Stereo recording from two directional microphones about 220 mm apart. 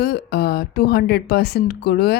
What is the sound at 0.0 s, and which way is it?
Speech, 45° left (ahead or behind).